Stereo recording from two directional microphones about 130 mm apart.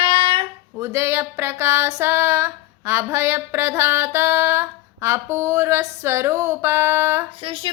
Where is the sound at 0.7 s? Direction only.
20° right (ahead or behind).